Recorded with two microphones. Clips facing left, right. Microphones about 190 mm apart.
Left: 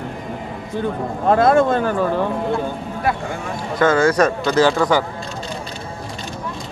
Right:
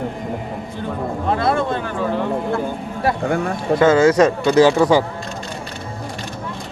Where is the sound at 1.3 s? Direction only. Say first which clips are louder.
Left 6 dB; 45° left (ahead or behind).